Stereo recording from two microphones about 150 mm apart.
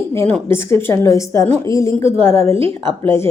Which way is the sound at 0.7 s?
15° left (ahead or behind).